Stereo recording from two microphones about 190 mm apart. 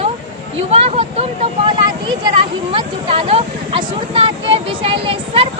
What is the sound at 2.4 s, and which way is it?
Speech, 30° right (ahead or behind).